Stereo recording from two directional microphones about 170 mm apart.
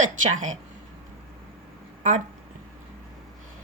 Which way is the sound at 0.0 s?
50° right (ahead or behind).